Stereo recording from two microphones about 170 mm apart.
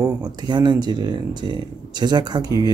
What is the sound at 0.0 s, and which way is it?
Speech, 25° right (ahead or behind).